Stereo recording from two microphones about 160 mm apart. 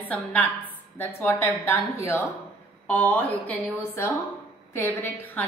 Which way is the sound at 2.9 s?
10° left (ahead or behind).